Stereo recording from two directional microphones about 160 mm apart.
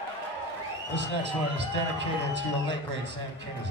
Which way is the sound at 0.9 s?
90° right.